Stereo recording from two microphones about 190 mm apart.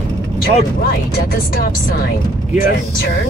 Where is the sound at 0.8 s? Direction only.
50° left (ahead or behind).